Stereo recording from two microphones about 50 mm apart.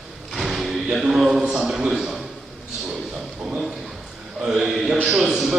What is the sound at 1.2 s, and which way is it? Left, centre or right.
Speech, centre.